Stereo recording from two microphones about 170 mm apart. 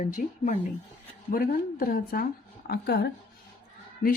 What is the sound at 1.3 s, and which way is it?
A woman's voice, 60° left (ahead or behind).